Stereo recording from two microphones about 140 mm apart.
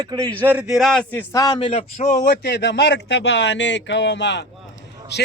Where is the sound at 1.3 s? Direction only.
25° left (ahead or behind).